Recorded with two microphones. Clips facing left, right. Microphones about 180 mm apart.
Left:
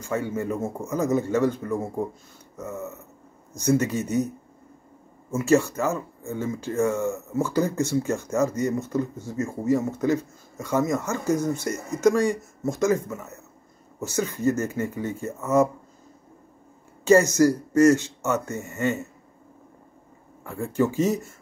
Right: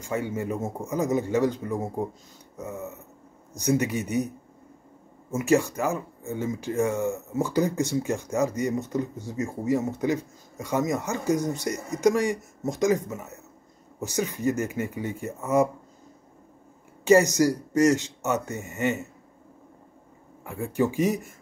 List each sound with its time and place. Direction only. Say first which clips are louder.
0.0 s speech: left 2 dB; 15° right (ahead or behind)
5.3 s speech: left 2 dB; 15° right (ahead or behind)
17.0 s speech: left 2 dB; 15° right (ahead or behind)
20.4 s speech: left 1 dB; 15° right (ahead or behind)